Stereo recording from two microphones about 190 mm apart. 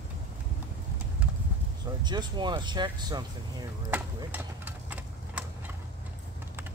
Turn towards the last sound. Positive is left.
turn(degrees=-10)  # may be behind; listen again after turning